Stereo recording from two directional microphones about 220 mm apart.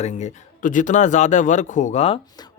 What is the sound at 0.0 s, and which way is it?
Speech, 30° left (ahead or behind).